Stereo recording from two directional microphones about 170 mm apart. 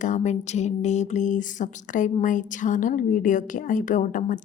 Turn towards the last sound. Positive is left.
turn(degrees=50)  # may be behind; listen again after turning